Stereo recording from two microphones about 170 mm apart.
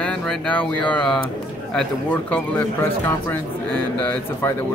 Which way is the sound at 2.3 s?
10° left (ahead or behind).